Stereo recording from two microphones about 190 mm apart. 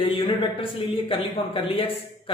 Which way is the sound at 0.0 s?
30° left (ahead or behind).